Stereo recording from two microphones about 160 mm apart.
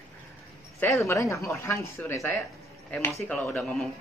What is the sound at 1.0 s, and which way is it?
A woman's voice, 20° left (ahead or behind).